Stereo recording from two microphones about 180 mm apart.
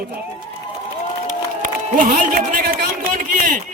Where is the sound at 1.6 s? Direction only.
50° right (ahead or behind).